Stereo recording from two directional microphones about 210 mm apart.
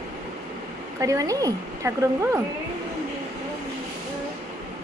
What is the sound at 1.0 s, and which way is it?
Speech, 15° right (ahead or behind).